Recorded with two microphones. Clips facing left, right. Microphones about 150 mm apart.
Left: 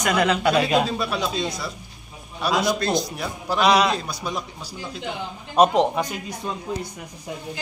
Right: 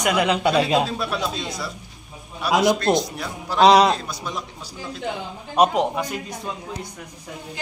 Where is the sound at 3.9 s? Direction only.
5° left (ahead or behind).